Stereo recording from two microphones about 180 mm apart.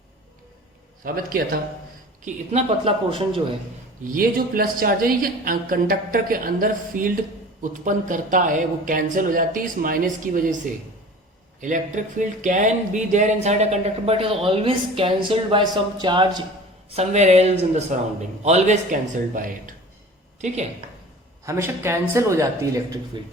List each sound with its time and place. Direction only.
1.0 s speech: 55° right (ahead or behind)
2.2 s speech: 35° right (ahead or behind)
4.1 s speech: 55° right (ahead or behind)
11.6 s speech: 45° right (ahead or behind); by 16.4 s 25° right (ahead or behind)
16.9 s speech: 40° right (ahead or behind)
21.4 s speech: 15° right (ahead or behind)